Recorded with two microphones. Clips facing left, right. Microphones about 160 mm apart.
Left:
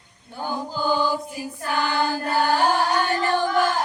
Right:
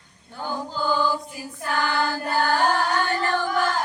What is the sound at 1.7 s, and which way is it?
Child singing, 15° left (ahead or behind).